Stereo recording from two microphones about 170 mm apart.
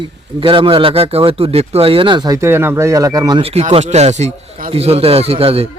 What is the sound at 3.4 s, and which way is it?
A man's voice, 35° right (ahead or behind).